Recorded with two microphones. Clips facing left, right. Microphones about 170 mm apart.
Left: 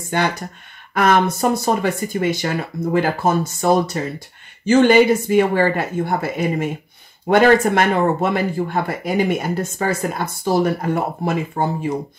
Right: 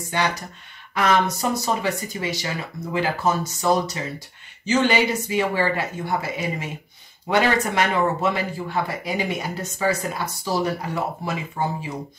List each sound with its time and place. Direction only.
0.1 s speech: 50° left (ahead or behind)